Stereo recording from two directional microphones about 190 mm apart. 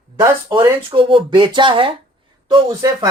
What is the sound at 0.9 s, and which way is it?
Speech, 25° right (ahead or behind).